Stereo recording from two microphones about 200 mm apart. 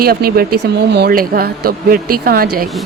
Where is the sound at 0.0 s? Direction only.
50° right (ahead or behind).